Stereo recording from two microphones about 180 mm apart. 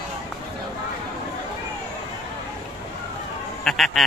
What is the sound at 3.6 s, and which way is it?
Duck, centre (ahead or behind).